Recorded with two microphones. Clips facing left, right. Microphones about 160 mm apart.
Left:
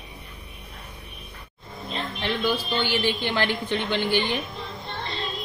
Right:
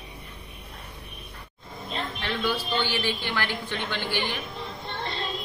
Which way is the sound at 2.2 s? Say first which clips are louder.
Left 4 dB; 15° left (ahead or behind).